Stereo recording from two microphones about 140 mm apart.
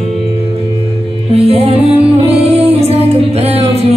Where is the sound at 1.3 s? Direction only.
45° right (ahead or behind).